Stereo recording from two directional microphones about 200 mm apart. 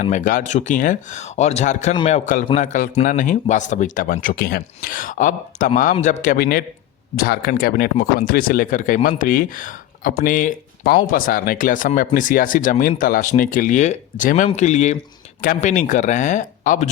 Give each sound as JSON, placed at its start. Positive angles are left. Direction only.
{"t": 0.0, "sound": "speech", "side_deg": 40}